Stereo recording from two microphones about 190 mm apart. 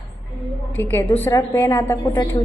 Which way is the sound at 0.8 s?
10° left (ahead or behind).